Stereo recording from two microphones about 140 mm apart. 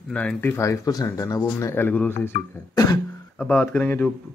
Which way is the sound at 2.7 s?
30° left (ahead or behind).